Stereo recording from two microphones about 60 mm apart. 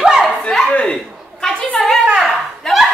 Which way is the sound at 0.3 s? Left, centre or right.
Centre.